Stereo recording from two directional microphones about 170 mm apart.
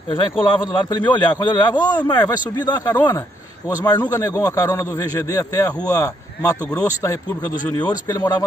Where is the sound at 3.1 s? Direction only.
20° left (ahead or behind).